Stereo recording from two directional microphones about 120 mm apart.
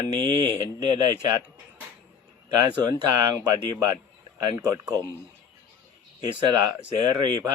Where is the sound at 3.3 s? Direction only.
30° right (ahead or behind).